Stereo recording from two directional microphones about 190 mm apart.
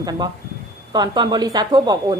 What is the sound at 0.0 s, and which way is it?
A woman's voice, 20° right (ahead or behind).